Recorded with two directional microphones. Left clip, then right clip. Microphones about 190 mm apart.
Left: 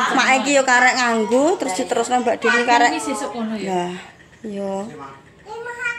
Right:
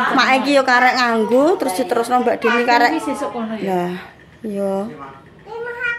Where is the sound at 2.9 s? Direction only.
55° left (ahead or behind).